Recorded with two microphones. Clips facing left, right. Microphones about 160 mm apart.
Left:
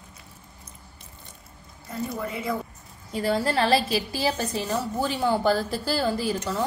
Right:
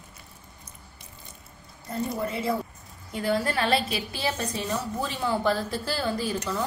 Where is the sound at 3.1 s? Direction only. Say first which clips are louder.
Left 1 dB; centre (ahead or behind).